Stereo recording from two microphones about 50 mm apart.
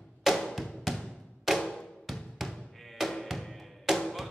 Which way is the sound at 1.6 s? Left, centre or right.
Centre.